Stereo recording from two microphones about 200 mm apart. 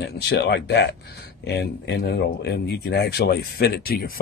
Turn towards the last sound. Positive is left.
turn(degrees=50)  # may be behind; listen again after turning